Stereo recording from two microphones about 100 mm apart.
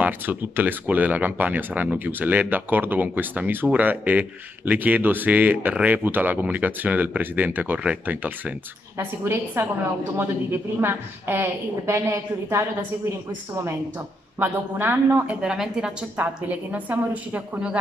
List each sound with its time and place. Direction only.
0.0 s speech: 20° right (ahead or behind)
8.9 s a woman's voice: 25° right (ahead or behind)
14.4 s a woman's voice: 20° right (ahead or behind)
15.4 s speech: 5° right (ahead or behind)